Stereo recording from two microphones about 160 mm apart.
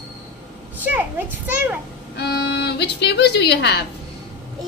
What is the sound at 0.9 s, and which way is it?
Speech, 10° right (ahead or behind).